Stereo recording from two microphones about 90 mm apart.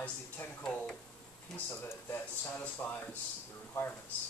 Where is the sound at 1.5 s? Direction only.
25° left (ahead or behind).